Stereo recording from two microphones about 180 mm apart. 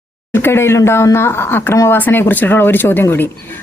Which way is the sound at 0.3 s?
10° left (ahead or behind).